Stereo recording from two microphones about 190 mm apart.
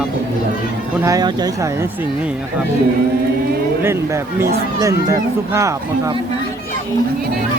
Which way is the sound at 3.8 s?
15° right (ahead or behind).